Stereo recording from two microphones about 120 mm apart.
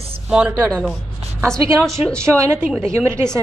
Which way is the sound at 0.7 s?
5° left (ahead or behind).